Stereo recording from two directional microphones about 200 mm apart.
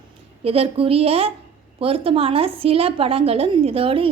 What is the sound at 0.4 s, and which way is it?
A woman's voice, 30° right (ahead or behind).